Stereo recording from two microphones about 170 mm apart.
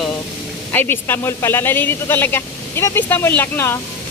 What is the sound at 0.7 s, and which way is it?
Speech, 10° left (ahead or behind).